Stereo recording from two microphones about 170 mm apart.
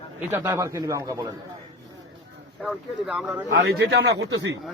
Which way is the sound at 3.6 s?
80° right.